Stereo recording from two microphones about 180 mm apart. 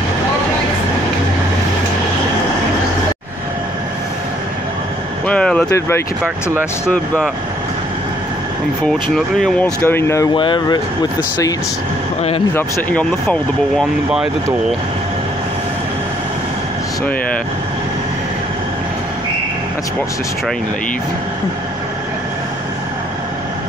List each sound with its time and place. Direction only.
5.2 s vehicle: 5° left (ahead or behind)
5.8 s speech: 15° left (ahead or behind)
8.8 s speech: centre (ahead or behind)
9.8 s speech: 15° left (ahead or behind)
10.3 s speech: 25° left (ahead or behind)
12.2 s speech: 35° left (ahead or behind)
12.5 s speech: 10° left (ahead or behind)